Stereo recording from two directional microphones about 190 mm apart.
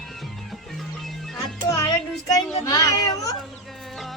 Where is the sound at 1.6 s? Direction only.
15° left (ahead or behind).